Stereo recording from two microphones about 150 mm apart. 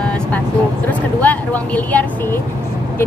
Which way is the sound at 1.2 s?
10° left (ahead or behind).